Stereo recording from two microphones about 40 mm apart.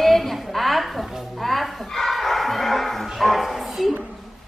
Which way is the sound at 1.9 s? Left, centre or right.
Centre.